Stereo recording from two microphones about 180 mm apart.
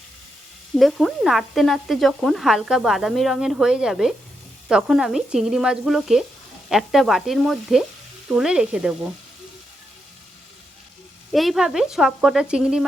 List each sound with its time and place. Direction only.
0.8 s speech: centre (ahead or behind)
11.3 s speech: centre (ahead or behind)